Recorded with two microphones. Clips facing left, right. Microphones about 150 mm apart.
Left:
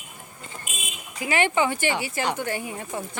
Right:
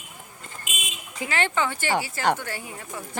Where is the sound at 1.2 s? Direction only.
15° left (ahead or behind).